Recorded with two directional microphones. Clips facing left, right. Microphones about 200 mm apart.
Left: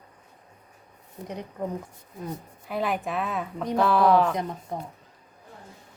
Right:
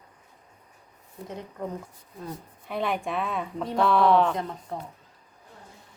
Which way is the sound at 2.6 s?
Centre (ahead or behind).